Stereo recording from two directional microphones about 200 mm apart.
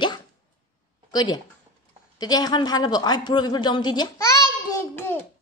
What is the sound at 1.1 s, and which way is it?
A man's voice, 20° left (ahead or behind).